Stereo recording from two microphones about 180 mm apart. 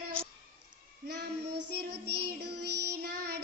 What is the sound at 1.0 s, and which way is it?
Child singing, 60° right (ahead or behind).